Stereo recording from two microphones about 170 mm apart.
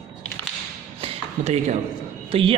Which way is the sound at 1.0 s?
35° right (ahead or behind).